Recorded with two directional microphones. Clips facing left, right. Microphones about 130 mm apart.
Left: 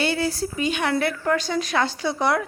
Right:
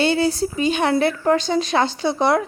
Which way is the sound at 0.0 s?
25° right (ahead or behind).